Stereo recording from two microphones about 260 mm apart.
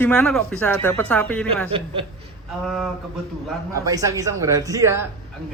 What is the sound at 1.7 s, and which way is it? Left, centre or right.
Speech, right.